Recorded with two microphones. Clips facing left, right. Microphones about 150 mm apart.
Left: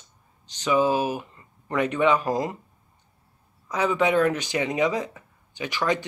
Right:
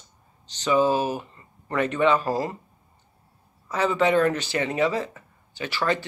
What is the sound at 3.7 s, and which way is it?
Speech, 10° left (ahead or behind).